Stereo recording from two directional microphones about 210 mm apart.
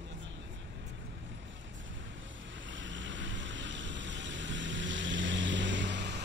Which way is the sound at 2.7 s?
60° right (ahead or behind).